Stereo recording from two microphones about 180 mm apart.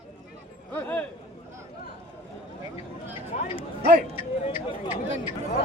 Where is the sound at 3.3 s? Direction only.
40° left (ahead or behind).